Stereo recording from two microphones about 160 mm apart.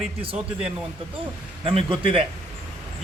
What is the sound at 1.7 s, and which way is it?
Speech, 35° right (ahead or behind).